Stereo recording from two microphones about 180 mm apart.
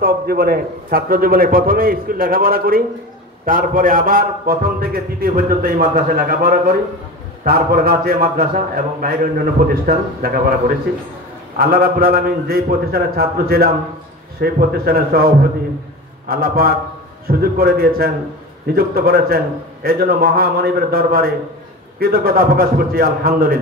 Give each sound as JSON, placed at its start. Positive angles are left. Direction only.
{"t": 0.0, "sound": "a man's voice", "side_deg": -55}
{"t": 11.5, "sound": "a man's voice", "side_deg": -55}